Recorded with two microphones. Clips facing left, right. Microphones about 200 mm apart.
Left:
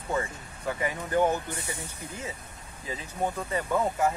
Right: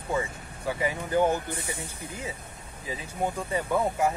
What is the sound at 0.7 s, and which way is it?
Speech, 10° right (ahead or behind).